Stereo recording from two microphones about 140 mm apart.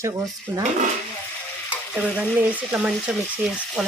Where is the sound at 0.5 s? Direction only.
15° right (ahead or behind).